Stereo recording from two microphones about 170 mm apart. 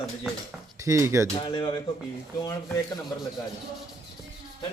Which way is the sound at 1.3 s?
30° left (ahead or behind).